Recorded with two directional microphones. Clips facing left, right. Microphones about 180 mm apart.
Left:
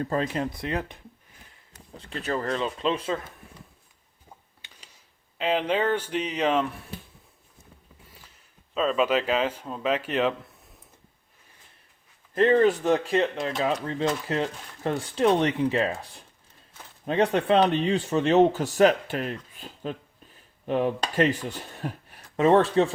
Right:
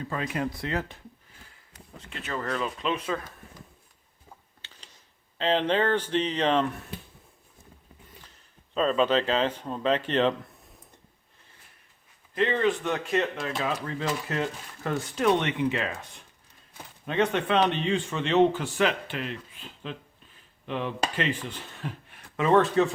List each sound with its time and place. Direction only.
0.0 s speech: 35° left (ahead or behind)
0.5 s speech: 20° left (ahead or behind)
2.0 s speech: 35° left (ahead or behind)
4.6 s a sound: 15° left (ahead or behind)
5.4 s speech: 10° left (ahead or behind)
8.7 s speech: 5° left (ahead or behind)
12.3 s speech: 45° left (ahead or behind)